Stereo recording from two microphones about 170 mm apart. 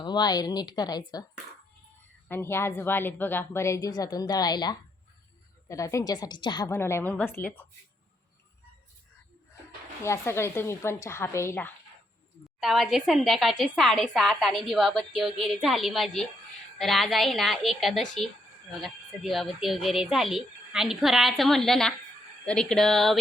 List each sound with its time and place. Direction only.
0.0 s a woman's voice: 25° left (ahead or behind)
2.2 s a woman's voice: 15° left (ahead or behind)
6.7 s a woman's voice: 15° left (ahead or behind)
10.0 s a woman's voice: 15° left (ahead or behind)
12.5 s a woman's voice: centre (ahead or behind)